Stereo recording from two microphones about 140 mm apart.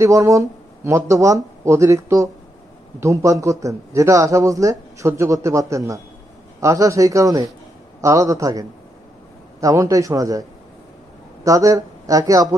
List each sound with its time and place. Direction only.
0.0 s a man's voice: 25° right (ahead or behind)
11.4 s speech: 25° right (ahead or behind)